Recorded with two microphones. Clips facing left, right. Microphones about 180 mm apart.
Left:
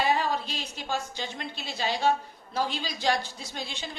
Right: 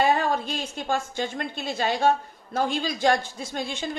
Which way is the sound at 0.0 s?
50° right (ahead or behind).